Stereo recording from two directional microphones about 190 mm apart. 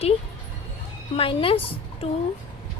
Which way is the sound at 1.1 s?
30° left (ahead or behind).